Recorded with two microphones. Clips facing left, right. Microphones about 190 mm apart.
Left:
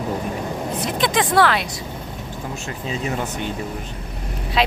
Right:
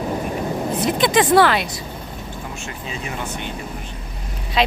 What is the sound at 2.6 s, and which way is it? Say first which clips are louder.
Speech: left 4 dB; 35° left (ahead or behind).